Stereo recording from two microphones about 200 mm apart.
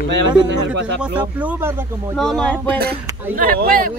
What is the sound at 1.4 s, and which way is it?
Speech, 10° right (ahead or behind).